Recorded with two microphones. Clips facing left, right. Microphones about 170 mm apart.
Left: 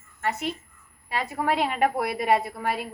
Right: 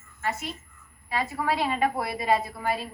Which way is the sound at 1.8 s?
60° left (ahead or behind).